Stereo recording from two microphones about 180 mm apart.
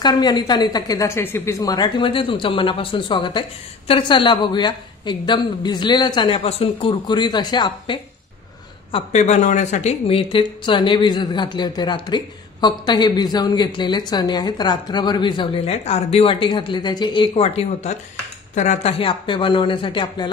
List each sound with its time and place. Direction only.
0.0 s a woman's voice: 20° left (ahead or behind)
8.9 s a woman's voice: 40° left (ahead or behind)